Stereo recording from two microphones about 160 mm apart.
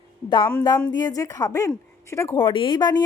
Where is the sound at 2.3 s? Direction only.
30° left (ahead or behind).